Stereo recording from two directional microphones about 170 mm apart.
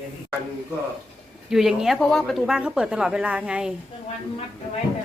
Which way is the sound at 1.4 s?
5° right (ahead or behind).